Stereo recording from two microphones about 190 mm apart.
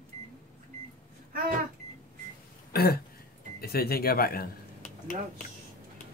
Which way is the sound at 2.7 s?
55° left (ahead or behind).